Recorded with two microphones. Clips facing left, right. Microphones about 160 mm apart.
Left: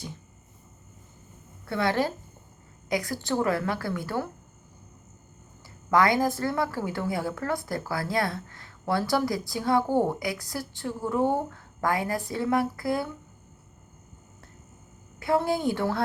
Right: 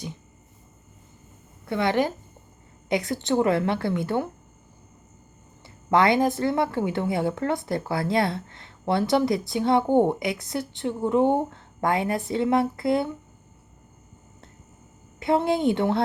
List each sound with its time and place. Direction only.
1.6 s a woman's voice: 20° right (ahead or behind)
5.6 s a woman's voice: 25° right (ahead or behind)
15.2 s a woman's voice: 25° right (ahead or behind)